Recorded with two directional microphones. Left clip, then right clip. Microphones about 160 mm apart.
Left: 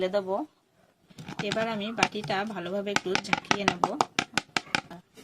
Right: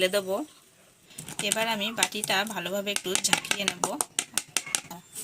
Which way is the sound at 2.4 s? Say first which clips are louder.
Right 2 dB; 10° right (ahead or behind).